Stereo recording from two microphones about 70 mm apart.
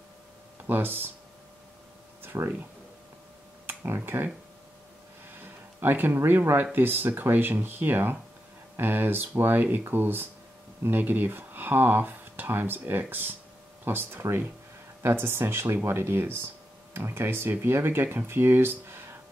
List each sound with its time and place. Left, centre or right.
0.7 s speech: right
2.2 s a sound: right
3.6 s speech: right
5.4 s speech: right